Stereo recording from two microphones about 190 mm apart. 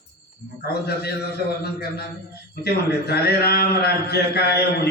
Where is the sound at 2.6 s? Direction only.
55° left (ahead or behind).